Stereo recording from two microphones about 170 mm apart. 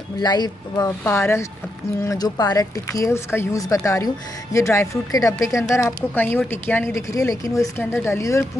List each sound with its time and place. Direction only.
0.2 s speech: 25° left (ahead or behind)